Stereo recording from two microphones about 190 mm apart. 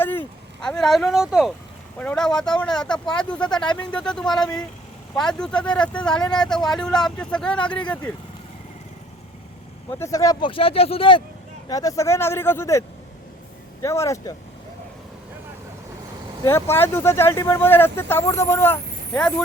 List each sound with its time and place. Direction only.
0.0 s speech: 10° left (ahead or behind)
9.9 s speech: 15° left (ahead or behind)
11.7 s speech: 20° left (ahead or behind)
13.8 s speech: 15° left (ahead or behind)
16.4 s speech: 15° left (ahead or behind)